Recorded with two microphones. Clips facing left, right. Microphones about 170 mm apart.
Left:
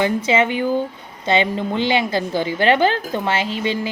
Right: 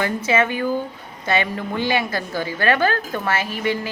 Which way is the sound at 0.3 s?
20° left (ahead or behind).